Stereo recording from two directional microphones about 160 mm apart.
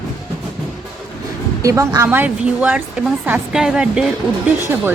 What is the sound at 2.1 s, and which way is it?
A woman's voice, 10° right (ahead or behind).